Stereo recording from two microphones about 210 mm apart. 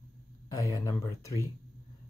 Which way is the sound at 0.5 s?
15° left (ahead or behind).